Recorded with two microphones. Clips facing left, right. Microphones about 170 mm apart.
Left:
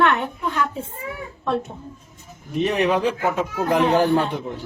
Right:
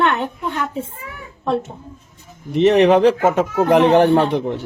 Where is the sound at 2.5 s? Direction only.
75° right (ahead or behind).